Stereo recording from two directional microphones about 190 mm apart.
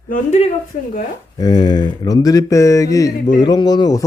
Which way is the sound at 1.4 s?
20° left (ahead or behind).